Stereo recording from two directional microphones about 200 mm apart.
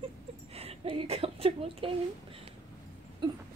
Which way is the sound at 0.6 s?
30° right (ahead or behind).